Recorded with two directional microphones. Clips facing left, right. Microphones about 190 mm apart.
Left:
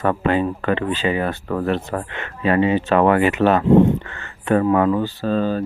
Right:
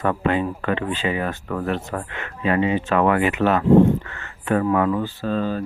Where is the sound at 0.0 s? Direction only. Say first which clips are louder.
Left 2 dB; 35° left (ahead or behind).